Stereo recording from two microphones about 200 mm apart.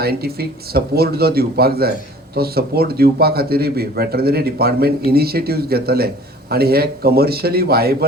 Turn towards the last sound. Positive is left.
turn(degrees=-50)  # may be behind; listen again after turning